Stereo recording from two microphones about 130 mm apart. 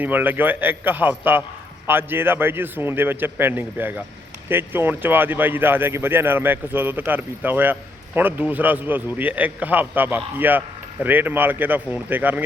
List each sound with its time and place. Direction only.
0.0 s speech: 15° right (ahead or behind)